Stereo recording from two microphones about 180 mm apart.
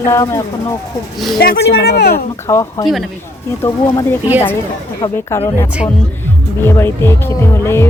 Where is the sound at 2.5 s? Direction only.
20° left (ahead or behind).